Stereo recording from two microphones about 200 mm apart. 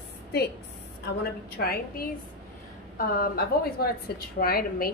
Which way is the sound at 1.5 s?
50° left (ahead or behind).